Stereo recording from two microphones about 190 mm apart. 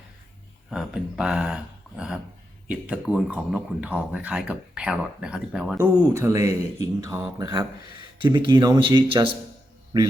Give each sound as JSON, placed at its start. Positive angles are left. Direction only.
{"t": 0.7, "sound": "speech", "side_deg": -5}
{"t": 5.8, "sound": "speech", "side_deg": -15}